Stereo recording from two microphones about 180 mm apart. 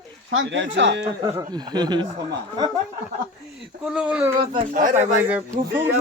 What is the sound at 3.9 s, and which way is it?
Speech, 5° right (ahead or behind).